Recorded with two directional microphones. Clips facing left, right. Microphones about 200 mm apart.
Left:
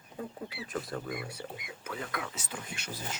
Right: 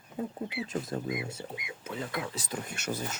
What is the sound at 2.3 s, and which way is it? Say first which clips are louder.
Speech: right 5 dB; 35° right (ahead or behind).